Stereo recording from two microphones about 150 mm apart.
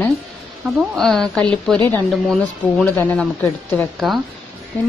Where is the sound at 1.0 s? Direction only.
Centre (ahead or behind).